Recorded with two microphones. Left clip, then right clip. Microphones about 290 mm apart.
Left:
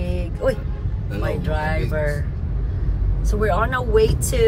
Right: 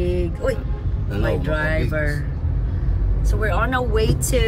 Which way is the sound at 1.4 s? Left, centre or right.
Centre.